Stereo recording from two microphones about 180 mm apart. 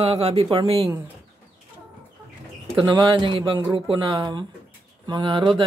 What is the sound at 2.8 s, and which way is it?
A man's voice, 25° right (ahead or behind).